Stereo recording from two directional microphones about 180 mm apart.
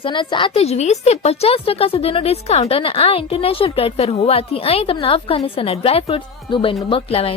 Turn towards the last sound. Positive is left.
turn(degrees=30)  # may be behind; listen again after turning